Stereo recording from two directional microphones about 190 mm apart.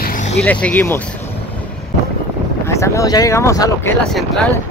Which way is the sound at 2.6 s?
15° left (ahead or behind).